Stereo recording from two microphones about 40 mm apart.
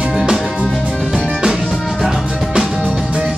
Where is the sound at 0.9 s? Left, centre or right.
Centre.